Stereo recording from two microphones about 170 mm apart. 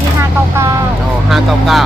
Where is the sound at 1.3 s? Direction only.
Centre (ahead or behind).